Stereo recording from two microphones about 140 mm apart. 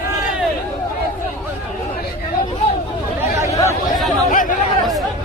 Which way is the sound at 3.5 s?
20° left (ahead or behind).